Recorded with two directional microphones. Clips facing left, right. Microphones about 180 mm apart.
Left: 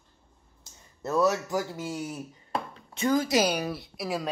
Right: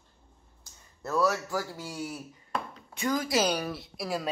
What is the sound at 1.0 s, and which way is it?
Speech, 20° left (ahead or behind).